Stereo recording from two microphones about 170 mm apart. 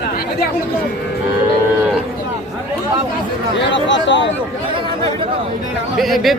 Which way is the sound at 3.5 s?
90° left.